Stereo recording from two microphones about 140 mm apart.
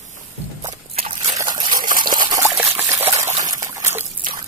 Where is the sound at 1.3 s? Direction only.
30° right (ahead or behind).